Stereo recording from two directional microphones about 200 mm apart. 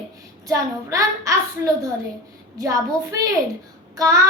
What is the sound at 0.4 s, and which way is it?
Speech, 15° right (ahead or behind).